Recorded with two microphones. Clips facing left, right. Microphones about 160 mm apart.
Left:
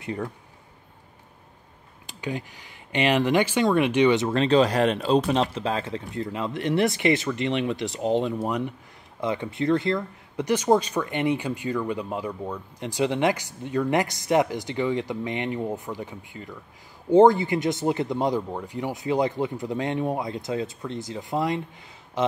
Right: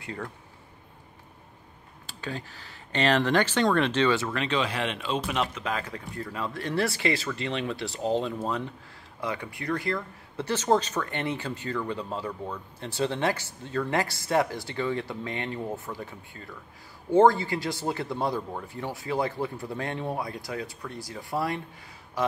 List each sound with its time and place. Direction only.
0.0 s speech: 20° left (ahead or behind)
2.0 s speech: 15° left (ahead or behind)
4.4 s speech: 35° left (ahead or behind); by 21.6 s 20° left (ahead or behind)